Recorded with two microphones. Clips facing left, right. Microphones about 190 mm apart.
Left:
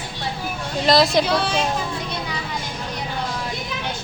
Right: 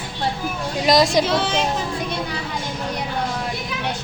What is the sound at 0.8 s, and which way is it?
Speech, 15° right (ahead or behind).